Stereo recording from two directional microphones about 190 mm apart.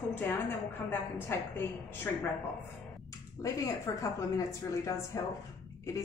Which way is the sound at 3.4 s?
15° left (ahead or behind).